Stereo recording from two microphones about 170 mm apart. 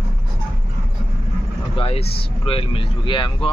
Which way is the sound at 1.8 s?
35° left (ahead or behind).